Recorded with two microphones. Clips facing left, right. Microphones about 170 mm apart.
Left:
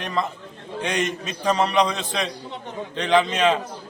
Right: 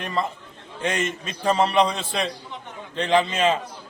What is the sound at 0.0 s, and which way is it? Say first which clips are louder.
A man's voice: left 1 dB; 5° right (ahead or behind).